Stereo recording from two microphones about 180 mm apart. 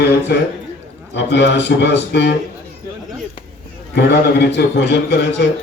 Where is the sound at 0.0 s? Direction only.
65° left (ahead or behind).